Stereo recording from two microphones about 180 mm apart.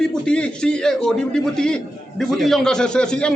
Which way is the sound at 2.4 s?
5° left (ahead or behind).